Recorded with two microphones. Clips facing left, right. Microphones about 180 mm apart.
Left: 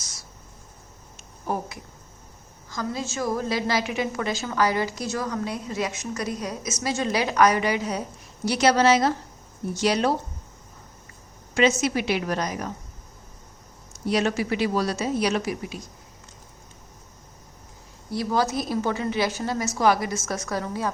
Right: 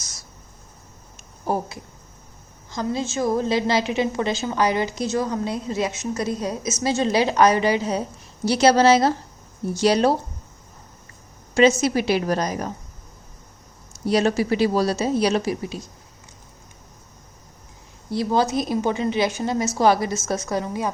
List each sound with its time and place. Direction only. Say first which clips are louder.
1.5 s a woman's voice: right 4 dB; 30° right (ahead or behind)
11.8 s a woman's voice: right 4 dB; 35° right (ahead or behind)
14.0 s a woman's voice: right 4 dB; 35° right (ahead or behind)
18.1 s a woman's voice: right 3 dB; 25° right (ahead or behind)